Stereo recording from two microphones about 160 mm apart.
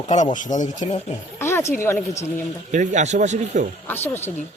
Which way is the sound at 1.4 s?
15° left (ahead or behind).